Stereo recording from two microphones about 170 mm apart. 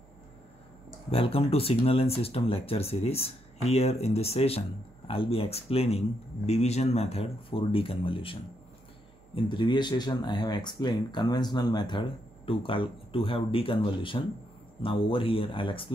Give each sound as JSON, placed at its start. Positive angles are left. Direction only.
{"t": 1.1, "sound": "speech", "side_deg": 35}